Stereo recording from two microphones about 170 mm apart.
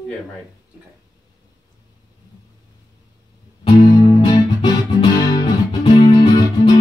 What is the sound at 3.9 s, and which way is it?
Music, 25° left (ahead or behind).